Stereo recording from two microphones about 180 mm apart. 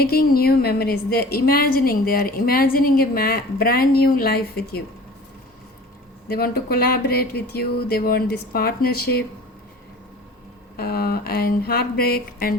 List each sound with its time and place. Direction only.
0.0 s speech: 60° left (ahead or behind)
6.2 s speech: 60° left (ahead or behind)
10.8 s speech: 60° left (ahead or behind)